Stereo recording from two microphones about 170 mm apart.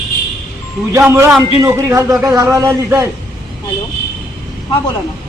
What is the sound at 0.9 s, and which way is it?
A man's voice, 15° right (ahead or behind).